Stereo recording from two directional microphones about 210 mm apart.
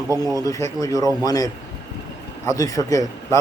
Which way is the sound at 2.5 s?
15° left (ahead or behind).